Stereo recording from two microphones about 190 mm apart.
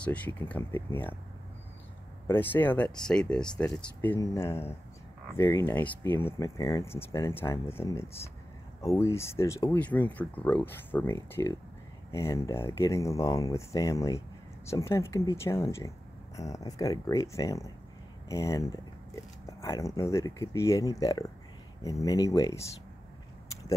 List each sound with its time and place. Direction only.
0.0 s speech: 5° left (ahead or behind)
2.2 s speech: 10° left (ahead or behind)